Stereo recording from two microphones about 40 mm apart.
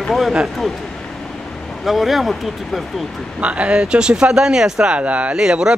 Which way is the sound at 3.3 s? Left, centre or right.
Right.